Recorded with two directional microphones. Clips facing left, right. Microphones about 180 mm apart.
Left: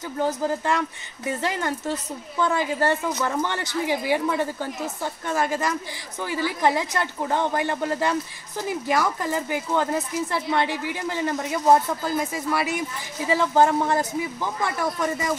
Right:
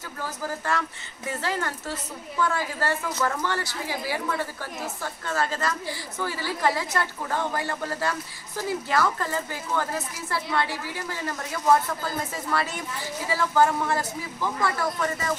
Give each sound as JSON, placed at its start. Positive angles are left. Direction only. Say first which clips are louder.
{"t": 0.2, "sound": "a woman's voice", "louder": "left 8 dB", "side_deg": 20}